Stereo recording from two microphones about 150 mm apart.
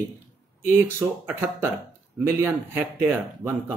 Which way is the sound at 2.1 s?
15° right (ahead or behind).